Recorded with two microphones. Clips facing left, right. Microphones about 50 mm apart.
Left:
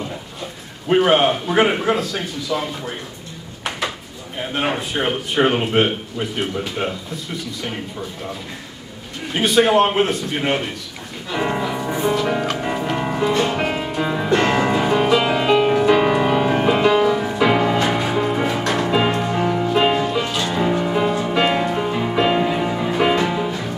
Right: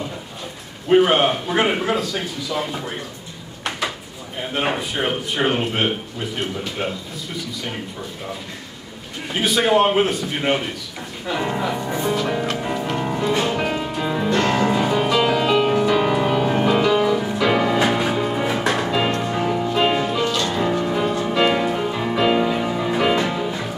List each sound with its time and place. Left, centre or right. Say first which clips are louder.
0.8 s speech: even; centre
4.4 s speech: left 1 dB; centre
9.3 s speech: left 2 dB; centre
11.3 s speech: left 3 dB; centre
11.7 s music: left 2 dB; centre
13.3 s music: even; centre
17.7 s music: even; centre